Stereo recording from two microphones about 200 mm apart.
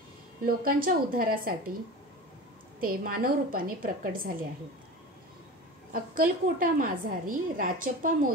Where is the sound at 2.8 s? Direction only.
45° right (ahead or behind).